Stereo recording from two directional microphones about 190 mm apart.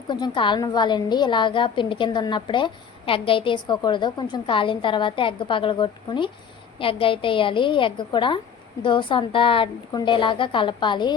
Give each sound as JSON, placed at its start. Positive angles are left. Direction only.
{"t": 0.1, "sound": "a woman's voice", "side_deg": 25}